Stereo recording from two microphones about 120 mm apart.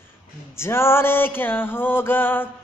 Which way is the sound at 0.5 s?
20° left (ahead or behind).